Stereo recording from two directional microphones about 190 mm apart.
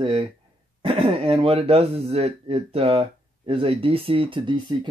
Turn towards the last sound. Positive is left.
turn(degrees=-25)  # may be behind; listen again after turning